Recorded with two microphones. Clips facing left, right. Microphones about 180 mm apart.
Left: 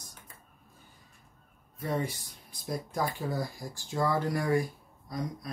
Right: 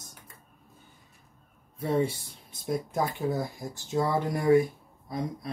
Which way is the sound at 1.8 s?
30° right (ahead or behind).